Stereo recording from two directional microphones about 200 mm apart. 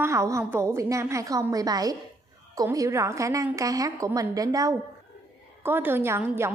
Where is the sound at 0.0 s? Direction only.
15° right (ahead or behind).